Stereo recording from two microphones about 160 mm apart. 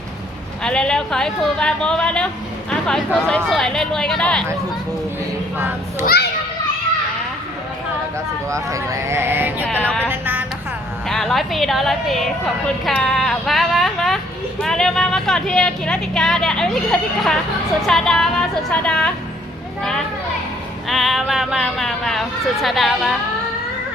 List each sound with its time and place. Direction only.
0.6 s speech: 5° left (ahead or behind)
2.6 s a sound: 5° left (ahead or behind)
3.2 s speech: 5° left (ahead or behind)
8.4 s speech: 20° right (ahead or behind)
9.6 s music: 5° left (ahead or behind)
10.1 s music: 10° right (ahead or behind)
11.1 s speech: 5° left (ahead or behind)
12.8 s a sound: 5° left (ahead or behind)
14.6 s speech: 5° left (ahead or behind)
20.8 s speech: centre (ahead or behind)